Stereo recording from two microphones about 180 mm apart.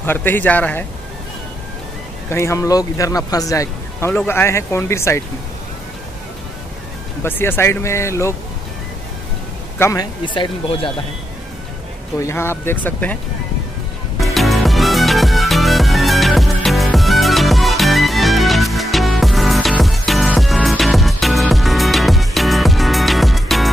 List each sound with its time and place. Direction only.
0.0 s speech: 10° left (ahead or behind)
2.2 s speech: 15° left (ahead or behind)
7.2 s speech: 10° left (ahead or behind)
9.8 s speech: 20° left (ahead or behind)
12.2 s speech: 15° left (ahead or behind)
14.2 s music: centre (ahead or behind)